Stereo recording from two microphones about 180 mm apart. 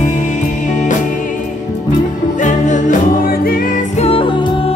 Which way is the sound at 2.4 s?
45° left (ahead or behind).